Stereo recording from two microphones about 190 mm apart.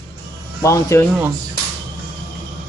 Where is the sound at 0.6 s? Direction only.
15° left (ahead or behind).